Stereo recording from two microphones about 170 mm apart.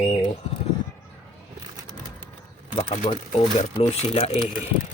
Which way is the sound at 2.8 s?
40° left (ahead or behind).